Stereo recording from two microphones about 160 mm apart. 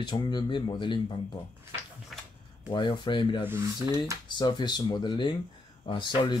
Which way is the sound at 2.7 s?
30° left (ahead or behind).